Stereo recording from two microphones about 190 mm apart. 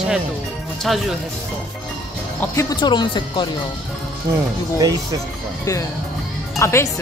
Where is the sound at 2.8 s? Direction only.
25° left (ahead or behind).